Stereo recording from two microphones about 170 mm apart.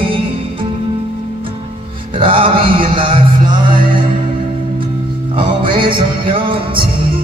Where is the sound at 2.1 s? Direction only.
30° right (ahead or behind).